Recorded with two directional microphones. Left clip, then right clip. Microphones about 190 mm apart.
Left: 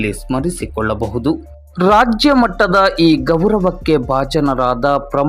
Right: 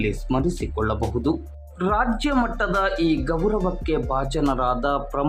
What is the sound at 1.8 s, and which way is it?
Speech, 35° left (ahead or behind).